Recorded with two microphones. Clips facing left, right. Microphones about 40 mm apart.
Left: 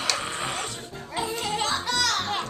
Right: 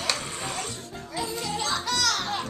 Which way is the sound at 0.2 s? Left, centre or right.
Left.